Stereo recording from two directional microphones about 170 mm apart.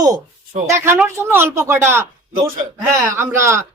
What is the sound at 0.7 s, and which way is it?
Speech, 15° right (ahead or behind).